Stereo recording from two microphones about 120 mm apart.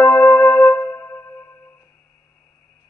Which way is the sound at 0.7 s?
20° left (ahead or behind).